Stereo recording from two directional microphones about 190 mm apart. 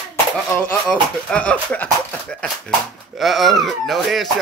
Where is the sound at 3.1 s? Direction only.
Centre (ahead or behind).